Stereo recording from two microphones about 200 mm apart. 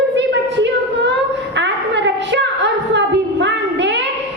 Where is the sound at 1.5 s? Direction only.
60° right (ahead or behind).